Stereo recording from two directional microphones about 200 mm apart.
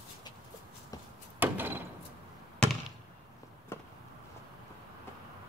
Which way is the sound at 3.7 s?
10° left (ahead or behind).